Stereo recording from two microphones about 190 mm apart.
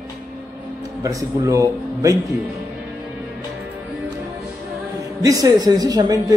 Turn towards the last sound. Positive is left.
turn(degrees=-20)  # may be behind; listen again after turning